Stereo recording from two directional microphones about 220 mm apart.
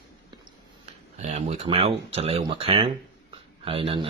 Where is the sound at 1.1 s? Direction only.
30° right (ahead or behind).